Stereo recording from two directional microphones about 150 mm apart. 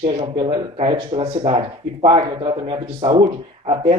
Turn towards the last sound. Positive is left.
turn(degrees=-40)  # may be behind; listen again after turning